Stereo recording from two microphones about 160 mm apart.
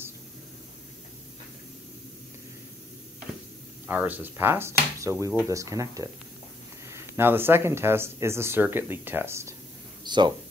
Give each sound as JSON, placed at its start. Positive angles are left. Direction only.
{"t": 3.8, "sound": "speech", "side_deg": -10}
{"t": 10.0, "sound": "speech", "side_deg": -30}